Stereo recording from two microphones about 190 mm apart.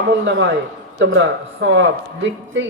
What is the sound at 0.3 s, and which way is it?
Speech, 75° right (ahead or behind).